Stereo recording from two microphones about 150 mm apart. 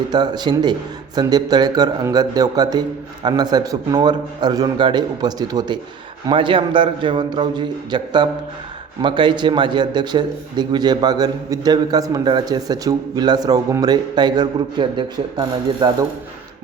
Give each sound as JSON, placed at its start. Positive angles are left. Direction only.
{"t": 0.1, "sound": "a man's voice", "side_deg": -30}